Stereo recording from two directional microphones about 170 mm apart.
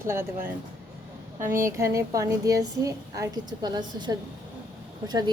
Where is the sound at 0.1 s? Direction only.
15° right (ahead or behind).